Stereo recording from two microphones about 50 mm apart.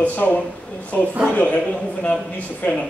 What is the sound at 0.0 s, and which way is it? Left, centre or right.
A man's voice, left.